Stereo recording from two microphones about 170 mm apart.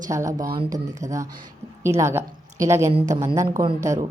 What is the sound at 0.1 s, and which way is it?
A woman's voice, 20° right (ahead or behind).